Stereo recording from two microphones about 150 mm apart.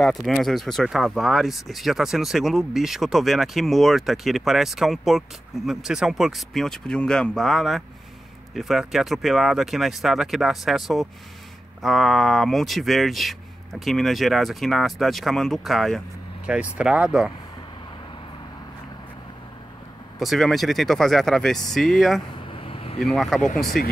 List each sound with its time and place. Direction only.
0.0 s speech: centre (ahead or behind)
20.2 s speech: centre (ahead or behind)
22.5 s a sound: 35° left (ahead or behind)
22.9 s speech: centre (ahead or behind)